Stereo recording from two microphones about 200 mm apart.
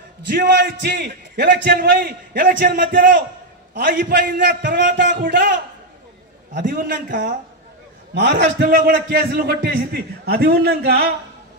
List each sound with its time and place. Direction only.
0.3 s a man's voice: 55° right (ahead or behind)
6.5 s a man's voice: 45° right (ahead or behind)
8.1 s a man's voice: 55° right (ahead or behind)